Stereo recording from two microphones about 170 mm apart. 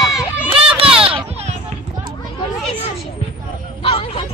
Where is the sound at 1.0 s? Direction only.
35° right (ahead or behind).